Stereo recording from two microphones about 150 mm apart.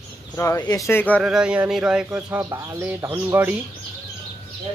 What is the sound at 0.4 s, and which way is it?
Speech, 20° left (ahead or behind).